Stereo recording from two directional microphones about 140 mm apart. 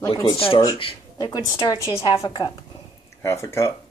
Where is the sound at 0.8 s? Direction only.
40° left (ahead or behind).